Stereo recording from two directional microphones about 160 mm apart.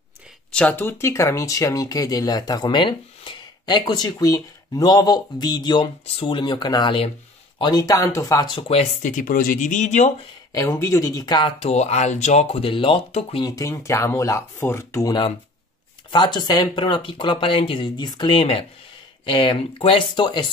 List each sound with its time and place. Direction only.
0.5 s speech: 10° left (ahead or behind); by 8.8 s 35° left (ahead or behind)
9.0 s speech: 55° left (ahead or behind)
10.5 s speech: 20° left (ahead or behind)
11.7 s speech: 45° left (ahead or behind)
13.5 s speech: 20° left (ahead or behind)
16.1 s speech: 30° left (ahead or behind)